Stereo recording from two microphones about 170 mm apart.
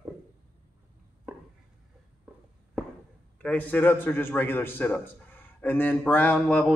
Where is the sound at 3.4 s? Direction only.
10° left (ahead or behind).